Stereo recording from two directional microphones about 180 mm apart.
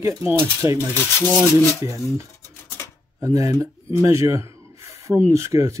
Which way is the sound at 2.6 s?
15° left (ahead or behind).